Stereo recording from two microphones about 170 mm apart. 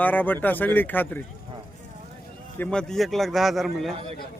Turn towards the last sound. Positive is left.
turn(degrees=0)  # may be behind; listen again after turning